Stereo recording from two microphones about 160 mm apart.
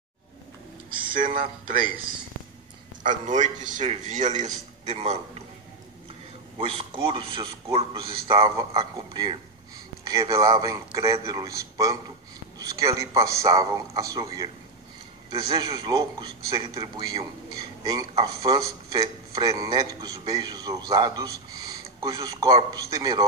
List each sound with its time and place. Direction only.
1.1 s speech: 60° right (ahead or behind)
3.0 s a man's voice: 50° right (ahead or behind)
6.6 s speech: 35° right (ahead or behind)
8.5 s a man's voice: 25° right (ahead or behind)
12.5 s a sound: 20° right (ahead or behind)
13.1 s a man's voice: 20° right (ahead or behind)